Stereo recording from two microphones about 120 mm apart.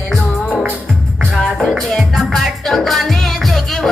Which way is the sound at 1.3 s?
Centre (ahead or behind).